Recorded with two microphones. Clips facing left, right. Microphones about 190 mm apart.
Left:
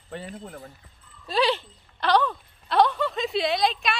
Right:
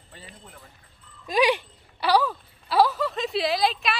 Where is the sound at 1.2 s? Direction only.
15° right (ahead or behind).